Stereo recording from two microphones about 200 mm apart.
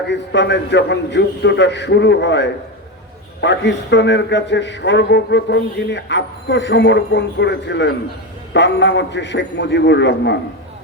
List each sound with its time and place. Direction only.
0.1 s a man's voice: 60° left (ahead or behind)